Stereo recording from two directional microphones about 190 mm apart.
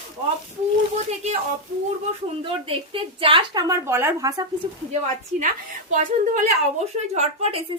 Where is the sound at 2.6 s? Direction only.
30° right (ahead or behind).